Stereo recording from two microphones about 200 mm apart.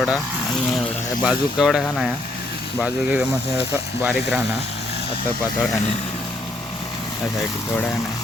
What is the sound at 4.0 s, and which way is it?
Speech, 5° right (ahead or behind).